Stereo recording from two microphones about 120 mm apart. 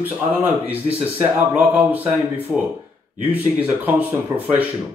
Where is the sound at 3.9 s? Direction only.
15° right (ahead or behind).